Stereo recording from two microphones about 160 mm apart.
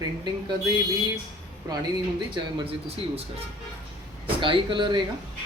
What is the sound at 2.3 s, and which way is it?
Speech, 35° right (ahead or behind).